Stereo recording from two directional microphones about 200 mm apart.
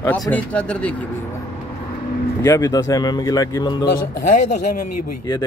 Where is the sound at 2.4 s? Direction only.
15° left (ahead or behind).